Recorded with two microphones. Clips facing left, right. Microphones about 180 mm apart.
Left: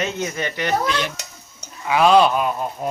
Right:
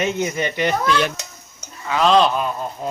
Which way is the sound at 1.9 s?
10° left (ahead or behind).